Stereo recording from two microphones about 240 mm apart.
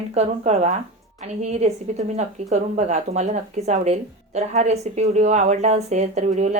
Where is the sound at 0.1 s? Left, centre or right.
Right.